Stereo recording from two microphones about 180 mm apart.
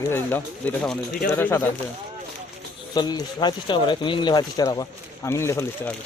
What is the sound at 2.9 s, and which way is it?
Speech, 25° left (ahead or behind).